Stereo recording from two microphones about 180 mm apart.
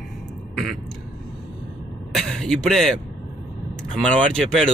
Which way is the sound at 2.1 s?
Centre (ahead or behind).